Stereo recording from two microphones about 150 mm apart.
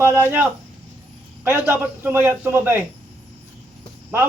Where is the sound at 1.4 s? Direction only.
15° right (ahead or behind).